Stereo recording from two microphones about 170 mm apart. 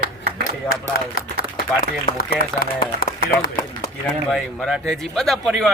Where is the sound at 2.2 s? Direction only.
60° left (ahead or behind).